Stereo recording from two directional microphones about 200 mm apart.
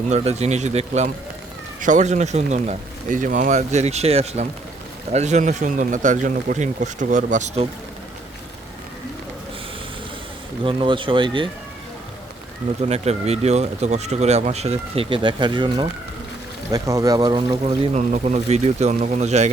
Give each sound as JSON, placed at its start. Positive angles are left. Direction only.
{"t": 0.1, "sound": "speech", "side_deg": -35}
{"t": 10.6, "sound": "speech", "side_deg": -25}
{"t": 12.9, "sound": "speech", "side_deg": -30}
{"t": 17.9, "sound": "speech", "side_deg": -35}